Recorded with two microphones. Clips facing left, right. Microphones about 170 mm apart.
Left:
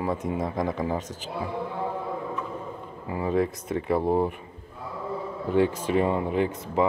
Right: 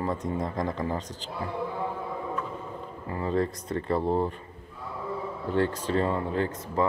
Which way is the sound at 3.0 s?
10° left (ahead or behind).